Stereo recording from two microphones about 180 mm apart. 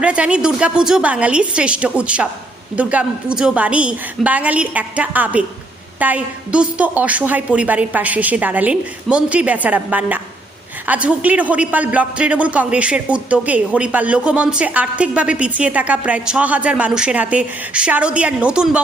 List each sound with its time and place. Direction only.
0.0 s a man's voice: 5° right (ahead or behind)